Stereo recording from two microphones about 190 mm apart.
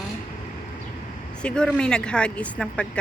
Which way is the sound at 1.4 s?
5° left (ahead or behind).